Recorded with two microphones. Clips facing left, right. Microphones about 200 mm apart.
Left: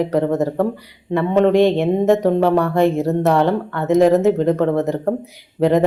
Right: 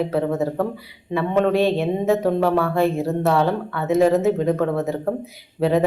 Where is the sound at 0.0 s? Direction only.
15° left (ahead or behind).